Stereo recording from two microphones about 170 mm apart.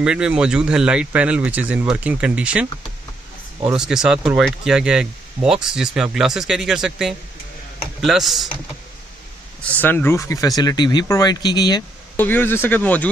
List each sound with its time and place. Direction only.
0.0 s speech: 5° right (ahead or behind)
9.6 s speech: 10° left (ahead or behind)
12.2 s speech: 10° left (ahead or behind)